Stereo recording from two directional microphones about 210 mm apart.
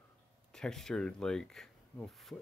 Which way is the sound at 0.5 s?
Centre (ahead or behind).